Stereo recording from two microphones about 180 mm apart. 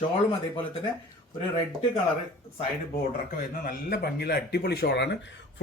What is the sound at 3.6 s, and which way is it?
Speech, 60° left (ahead or behind).